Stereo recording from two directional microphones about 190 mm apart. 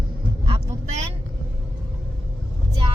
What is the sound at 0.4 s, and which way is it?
Vehicle, 30° right (ahead or behind).